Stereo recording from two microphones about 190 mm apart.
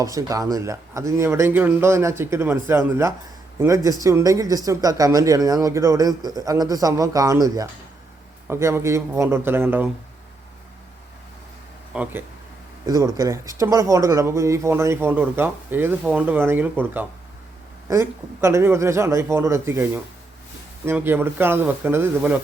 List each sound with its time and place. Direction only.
0.0 s speech: 15° right (ahead or behind)
11.9 s speech: 5° right (ahead or behind)
12.8 s speech: 20° right (ahead or behind)